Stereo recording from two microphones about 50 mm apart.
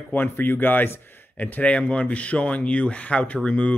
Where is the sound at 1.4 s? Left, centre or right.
Left.